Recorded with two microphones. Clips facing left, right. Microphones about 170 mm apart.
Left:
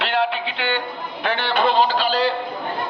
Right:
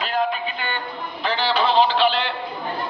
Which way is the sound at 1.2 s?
60° left (ahead or behind).